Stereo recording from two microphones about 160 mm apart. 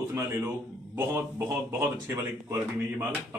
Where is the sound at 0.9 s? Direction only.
15° right (ahead or behind).